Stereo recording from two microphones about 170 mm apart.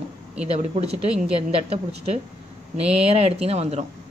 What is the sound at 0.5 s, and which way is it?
Speech, 40° right (ahead or behind).